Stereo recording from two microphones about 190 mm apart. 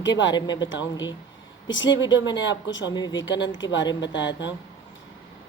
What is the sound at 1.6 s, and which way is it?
Speech, 80° left.